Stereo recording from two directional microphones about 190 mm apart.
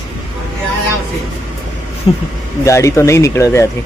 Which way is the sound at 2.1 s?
30° left (ahead or behind).